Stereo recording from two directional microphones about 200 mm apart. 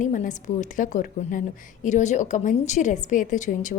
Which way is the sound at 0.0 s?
40° left (ahead or behind).